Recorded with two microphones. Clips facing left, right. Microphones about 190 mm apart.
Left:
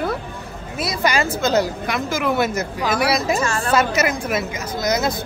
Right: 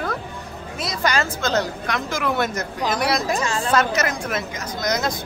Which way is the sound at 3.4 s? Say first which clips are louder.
Left 2 dB; 15° right (ahead or behind).